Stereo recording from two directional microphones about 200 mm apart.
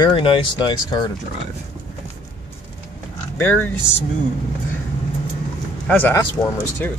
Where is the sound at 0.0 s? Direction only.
25° left (ahead or behind).